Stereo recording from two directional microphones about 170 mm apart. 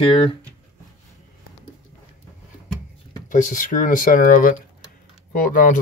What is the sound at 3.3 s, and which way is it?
Speech, 50° left (ahead or behind).